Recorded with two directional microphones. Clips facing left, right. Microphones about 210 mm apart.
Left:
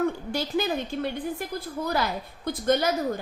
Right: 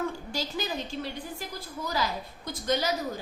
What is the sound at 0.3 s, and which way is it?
A woman's voice, 60° left (ahead or behind).